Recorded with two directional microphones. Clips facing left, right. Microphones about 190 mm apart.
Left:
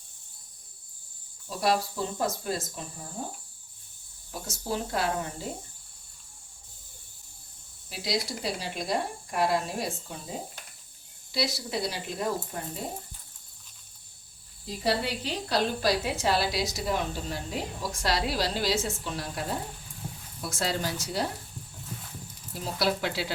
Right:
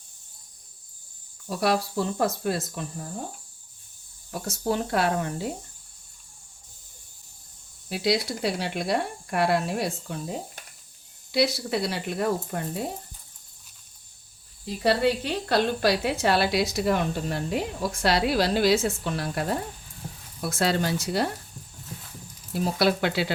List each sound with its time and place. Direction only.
1.5 s a woman's voice: 65° right (ahead or behind)
4.3 s a woman's voice: 65° right (ahead or behind)
7.9 s a woman's voice: 65° right (ahead or behind)
14.8 s a woman's voice: 60° right (ahead or behind)
22.5 s a woman's voice: 65° right (ahead or behind)